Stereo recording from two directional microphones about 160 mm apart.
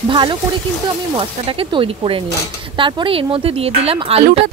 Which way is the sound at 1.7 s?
30° right (ahead or behind).